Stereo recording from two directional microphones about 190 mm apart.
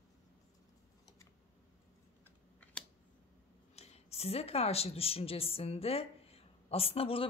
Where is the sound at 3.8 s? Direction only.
35° left (ahead or behind).